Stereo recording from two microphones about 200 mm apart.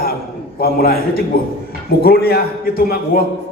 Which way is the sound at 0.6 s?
50° left (ahead or behind).